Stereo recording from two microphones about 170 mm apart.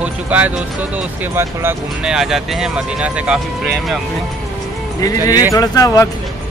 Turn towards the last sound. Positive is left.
turn(degrees=20)  # may be behind; listen again after turning